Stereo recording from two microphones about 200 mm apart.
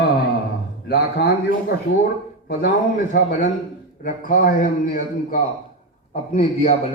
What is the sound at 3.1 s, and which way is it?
A man's voice, 40° left (ahead or behind).